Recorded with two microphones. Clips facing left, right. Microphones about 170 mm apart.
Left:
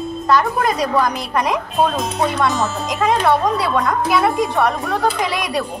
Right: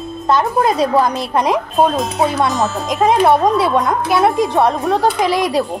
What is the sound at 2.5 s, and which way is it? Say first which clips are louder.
Speech: right 3 dB; centre (ahead or behind).